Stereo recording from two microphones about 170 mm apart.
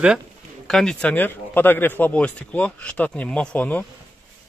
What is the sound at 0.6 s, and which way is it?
Speech, 5° left (ahead or behind).